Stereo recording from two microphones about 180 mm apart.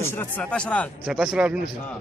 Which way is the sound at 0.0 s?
10° left (ahead or behind).